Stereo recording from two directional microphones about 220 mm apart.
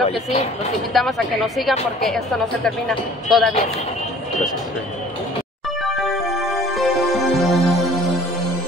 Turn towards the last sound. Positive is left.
turn(degrees=0)  # may be behind; listen again after turning